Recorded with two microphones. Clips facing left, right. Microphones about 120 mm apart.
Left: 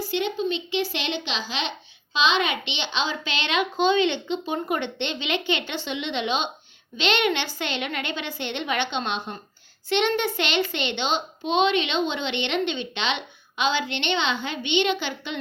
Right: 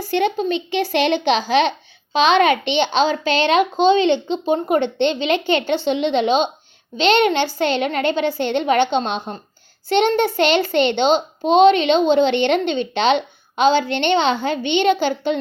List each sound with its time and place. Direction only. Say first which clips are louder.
0.1 s a child's voice: right 8 dB; 55° right (ahead or behind); by 15.4 s 40° right (ahead or behind)